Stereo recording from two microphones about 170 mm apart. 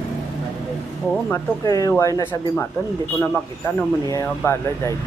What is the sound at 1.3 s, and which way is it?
Speech, 20° left (ahead or behind).